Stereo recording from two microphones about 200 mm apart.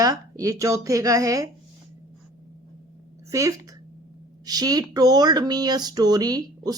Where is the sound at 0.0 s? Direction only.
15° right (ahead or behind).